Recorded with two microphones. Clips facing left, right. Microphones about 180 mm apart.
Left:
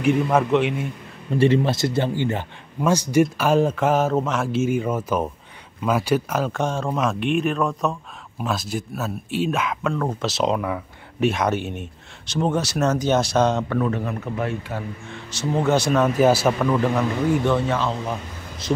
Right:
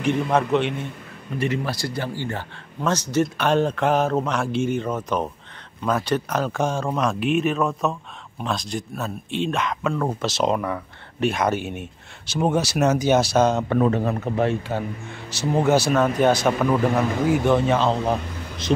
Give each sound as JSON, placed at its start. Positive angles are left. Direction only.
{"t": 0.0, "sound": "speech", "side_deg": 5}
{"t": 1.3, "sound": "speech", "side_deg": 30}
{"t": 13.7, "sound": "a man's voice", "side_deg": -30}
{"t": 15.3, "sound": "speech", "side_deg": -10}
{"t": 16.9, "sound": "speech", "side_deg": -5}
{"t": 17.6, "sound": "a man's voice", "side_deg": -30}